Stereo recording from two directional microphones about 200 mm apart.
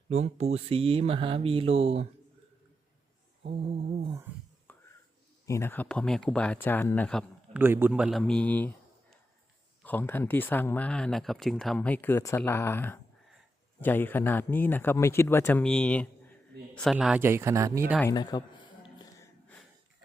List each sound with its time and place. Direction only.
0.1 s speech: 35° right (ahead or behind)
3.4 s mantra: 40° right (ahead or behind)
4.0 s speech: 15° right (ahead or behind)
4.7 s whispering: 10° left (ahead or behind)
5.5 s speech: 15° left (ahead or behind)
7.5 s a man's voice: 10° right (ahead or behind)
18.0 s a sound: 20° left (ahead or behind)